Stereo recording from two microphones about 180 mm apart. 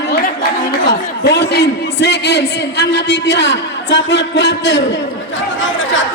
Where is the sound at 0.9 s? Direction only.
70° left (ahead or behind).